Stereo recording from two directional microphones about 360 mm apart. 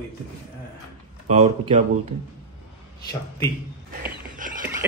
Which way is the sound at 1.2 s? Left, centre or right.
Centre.